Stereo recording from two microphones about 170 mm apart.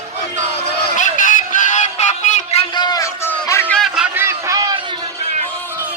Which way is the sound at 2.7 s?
25° left (ahead or behind).